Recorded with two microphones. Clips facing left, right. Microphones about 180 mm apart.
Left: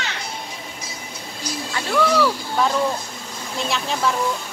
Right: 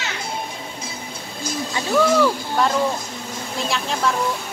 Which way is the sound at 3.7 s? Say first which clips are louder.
Even; centre (ahead or behind).